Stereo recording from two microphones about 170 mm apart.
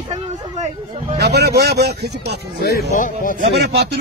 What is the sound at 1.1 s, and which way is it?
Speech, 75° right (ahead or behind).